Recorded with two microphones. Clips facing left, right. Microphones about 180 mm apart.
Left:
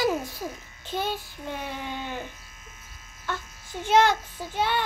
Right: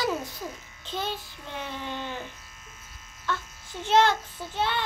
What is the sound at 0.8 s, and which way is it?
A child's voice, 10° left (ahead or behind).